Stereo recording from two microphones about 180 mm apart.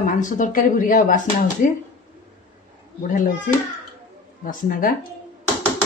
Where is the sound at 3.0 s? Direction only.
45° left (ahead or behind).